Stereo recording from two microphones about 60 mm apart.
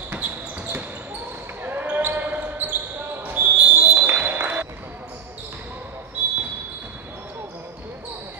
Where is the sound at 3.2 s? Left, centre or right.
Right.